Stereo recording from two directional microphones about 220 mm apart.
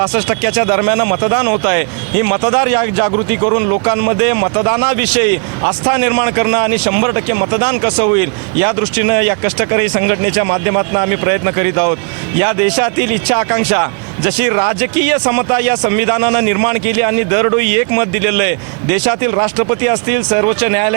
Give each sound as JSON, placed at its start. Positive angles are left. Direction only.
{"t": 0.1, "sound": "a man's voice", "side_deg": -15}